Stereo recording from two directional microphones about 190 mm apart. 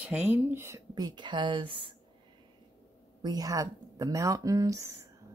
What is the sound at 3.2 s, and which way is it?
Speech, 20° right (ahead or behind).